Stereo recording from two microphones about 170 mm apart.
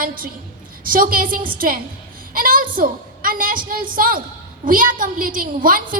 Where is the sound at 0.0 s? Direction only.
55° right (ahead or behind).